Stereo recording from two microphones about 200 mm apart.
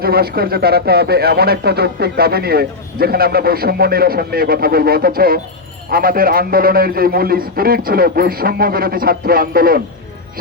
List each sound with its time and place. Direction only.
0.0 s speech: 50° right (ahead or behind)